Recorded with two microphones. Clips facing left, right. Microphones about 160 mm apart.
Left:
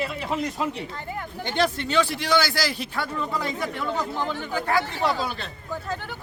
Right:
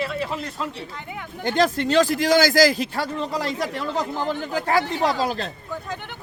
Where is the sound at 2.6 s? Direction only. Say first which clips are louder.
Right 10 dB; 90° right.